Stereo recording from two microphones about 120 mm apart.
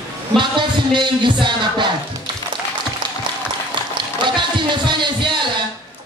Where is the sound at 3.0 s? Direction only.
40° right (ahead or behind).